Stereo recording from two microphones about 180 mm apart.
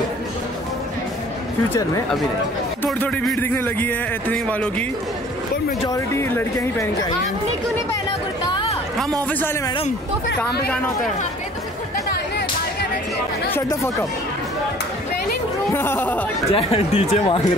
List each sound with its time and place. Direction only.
1.7 s a man's voice: 15° left (ahead or behind)
5.9 s a man's voice: 15° left (ahead or behind)
13.5 s a man's voice: 15° left (ahead or behind)
15.7 s speech: 15° left (ahead or behind)
16.5 s speech: 35° left (ahead or behind)